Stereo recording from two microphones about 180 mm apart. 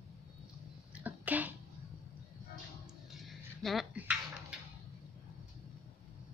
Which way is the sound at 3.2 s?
Centre (ahead or behind).